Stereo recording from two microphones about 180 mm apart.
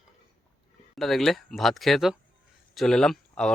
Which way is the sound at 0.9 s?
Centre (ahead or behind).